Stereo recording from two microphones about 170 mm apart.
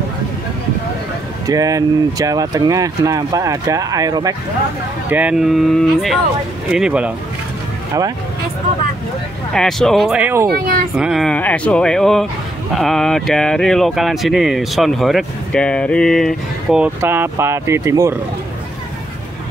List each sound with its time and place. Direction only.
1.5 s speech: 20° right (ahead or behind)
5.1 s speech: 5° right (ahead or behind)
9.5 s speech: 5° left (ahead or behind)
10.5 s speech: 60° right (ahead or behind)
11.0 s speech: centre (ahead or behind)
17.0 s speech: 15° right (ahead or behind)